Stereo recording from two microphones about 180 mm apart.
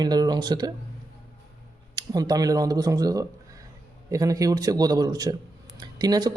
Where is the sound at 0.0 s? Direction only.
20° right (ahead or behind).